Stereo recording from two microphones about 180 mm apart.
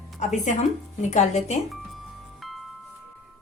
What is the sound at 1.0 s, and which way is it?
Speech, 40° left (ahead or behind).